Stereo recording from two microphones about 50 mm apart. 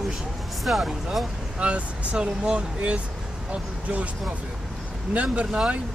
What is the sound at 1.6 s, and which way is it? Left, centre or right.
Speech, right.